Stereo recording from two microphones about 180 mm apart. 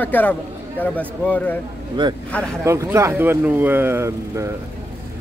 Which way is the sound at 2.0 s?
25° right (ahead or behind).